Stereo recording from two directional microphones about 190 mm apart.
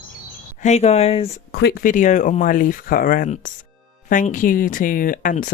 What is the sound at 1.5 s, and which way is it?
Speech, 55° left (ahead or behind).